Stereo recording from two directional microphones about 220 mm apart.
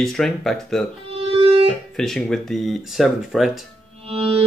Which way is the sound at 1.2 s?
25° right (ahead or behind).